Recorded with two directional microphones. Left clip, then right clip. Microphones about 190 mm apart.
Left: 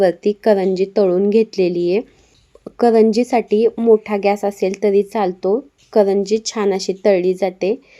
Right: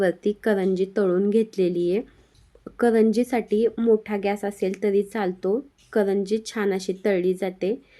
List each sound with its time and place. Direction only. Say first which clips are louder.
0.0 s a woman's voice: left 8 dB; centre (ahead or behind)